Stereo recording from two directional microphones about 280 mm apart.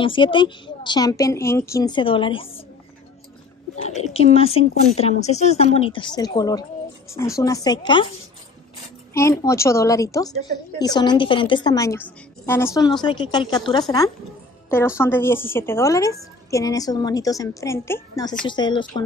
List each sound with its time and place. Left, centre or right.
0.0 s a woman's voice: centre
3.7 s a woman's voice: left
9.1 s a woman's voice: centre